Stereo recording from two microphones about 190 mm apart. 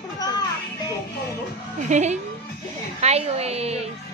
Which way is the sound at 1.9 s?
35° right (ahead or behind).